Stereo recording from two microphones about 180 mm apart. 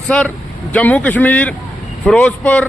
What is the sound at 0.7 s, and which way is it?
A man's voice, 5° left (ahead or behind).